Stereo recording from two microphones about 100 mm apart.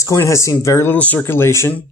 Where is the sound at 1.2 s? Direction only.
25° left (ahead or behind).